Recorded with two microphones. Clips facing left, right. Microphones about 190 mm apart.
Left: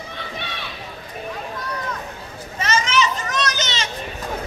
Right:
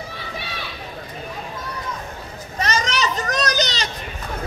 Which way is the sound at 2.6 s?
40° right (ahead or behind).